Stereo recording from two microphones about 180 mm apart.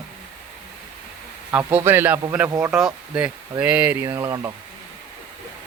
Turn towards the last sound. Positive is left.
turn(degrees=-20)  # may be behind; listen again after turning